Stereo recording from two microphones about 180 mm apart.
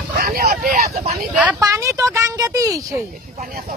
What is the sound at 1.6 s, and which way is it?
Speech, 15° right (ahead or behind).